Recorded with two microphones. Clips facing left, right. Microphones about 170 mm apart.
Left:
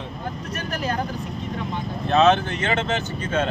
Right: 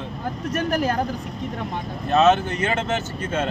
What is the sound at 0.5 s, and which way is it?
Speech, 55° right (ahead or behind).